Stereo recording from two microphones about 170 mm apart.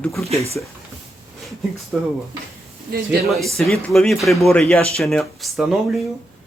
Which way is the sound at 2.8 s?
65° right (ahead or behind).